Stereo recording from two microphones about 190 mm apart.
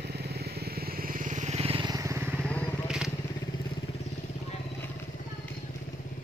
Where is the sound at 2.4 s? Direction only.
5° left (ahead or behind).